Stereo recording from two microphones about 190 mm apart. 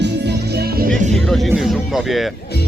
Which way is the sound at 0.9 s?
Centre (ahead or behind).